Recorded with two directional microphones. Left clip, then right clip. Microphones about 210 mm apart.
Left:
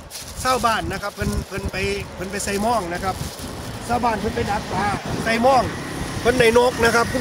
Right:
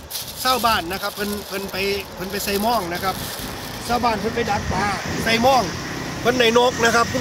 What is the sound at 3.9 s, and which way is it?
Speech, 10° right (ahead or behind).